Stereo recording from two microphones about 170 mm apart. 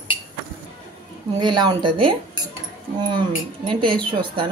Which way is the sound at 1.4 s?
25° right (ahead or behind).